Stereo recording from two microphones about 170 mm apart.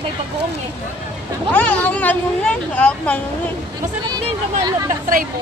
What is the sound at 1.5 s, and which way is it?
Speech, 10° left (ahead or behind).